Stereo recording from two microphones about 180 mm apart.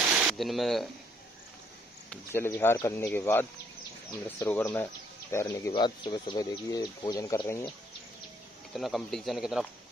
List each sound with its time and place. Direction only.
0.0 s a sound: 5° right (ahead or behind)
2.0 s speech: 10° left (ahead or behind)
8.7 s speech: centre (ahead or behind)